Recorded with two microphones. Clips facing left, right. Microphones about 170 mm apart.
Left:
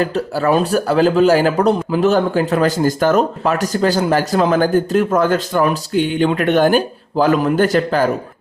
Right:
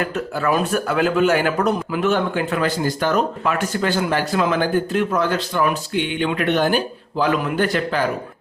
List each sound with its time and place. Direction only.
0.0 s speech: 35° left (ahead or behind)